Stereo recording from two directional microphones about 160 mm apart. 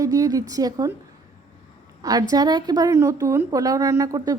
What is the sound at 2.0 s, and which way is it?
A woman's voice, 25° right (ahead or behind).